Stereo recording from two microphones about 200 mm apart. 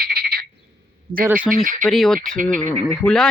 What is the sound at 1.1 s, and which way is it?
Speech, 25° right (ahead or behind).